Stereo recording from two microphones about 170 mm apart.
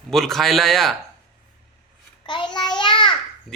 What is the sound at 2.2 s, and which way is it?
Child singing, 30° left (ahead or behind).